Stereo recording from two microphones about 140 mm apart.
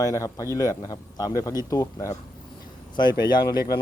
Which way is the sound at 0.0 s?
25° left (ahead or behind).